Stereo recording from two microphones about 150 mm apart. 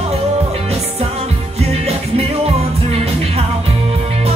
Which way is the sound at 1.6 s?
45° right (ahead or behind).